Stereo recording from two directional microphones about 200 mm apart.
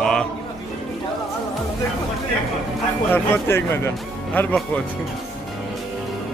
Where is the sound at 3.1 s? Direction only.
10° left (ahead or behind).